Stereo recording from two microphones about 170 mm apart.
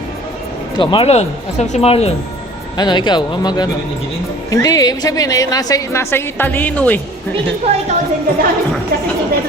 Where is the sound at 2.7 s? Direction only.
25° left (ahead or behind); by 7.0 s 10° left (ahead or behind).